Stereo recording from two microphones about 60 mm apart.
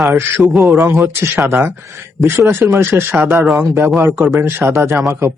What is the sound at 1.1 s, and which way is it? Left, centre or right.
Speech, right.